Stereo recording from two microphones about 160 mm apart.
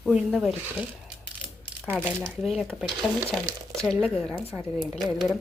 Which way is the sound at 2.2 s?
Centre (ahead or behind).